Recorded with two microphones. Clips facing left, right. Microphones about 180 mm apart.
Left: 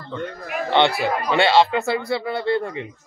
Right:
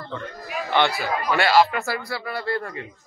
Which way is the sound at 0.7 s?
25° left (ahead or behind).